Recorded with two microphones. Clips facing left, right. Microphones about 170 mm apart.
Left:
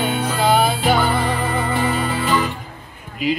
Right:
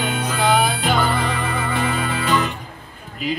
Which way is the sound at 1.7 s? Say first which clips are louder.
Left 2 dB; 5° left (ahead or behind).